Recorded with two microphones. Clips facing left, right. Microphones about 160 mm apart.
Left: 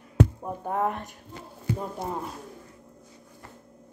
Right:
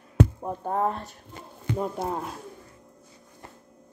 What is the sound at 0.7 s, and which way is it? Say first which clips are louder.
Speech: right 1 dB; 30° right (ahead or behind).